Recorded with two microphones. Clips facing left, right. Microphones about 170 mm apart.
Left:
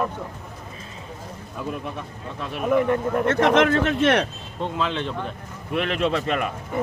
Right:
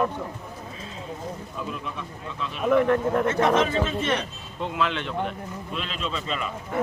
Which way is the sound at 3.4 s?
75° left (ahead or behind).